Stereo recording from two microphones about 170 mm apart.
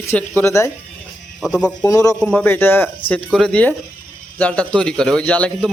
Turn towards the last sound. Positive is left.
turn(degrees=5)  # may be behind; listen again after turning